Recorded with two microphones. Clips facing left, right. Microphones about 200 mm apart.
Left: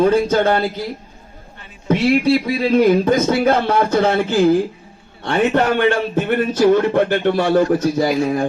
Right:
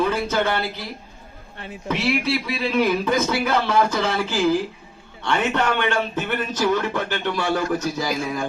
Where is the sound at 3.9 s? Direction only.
55° left (ahead or behind).